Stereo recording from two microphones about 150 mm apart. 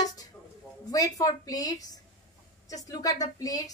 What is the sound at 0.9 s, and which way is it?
A woman's voice, 25° left (ahead or behind).